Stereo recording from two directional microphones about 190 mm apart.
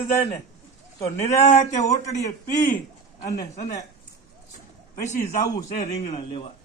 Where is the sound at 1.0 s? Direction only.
40° left (ahead or behind).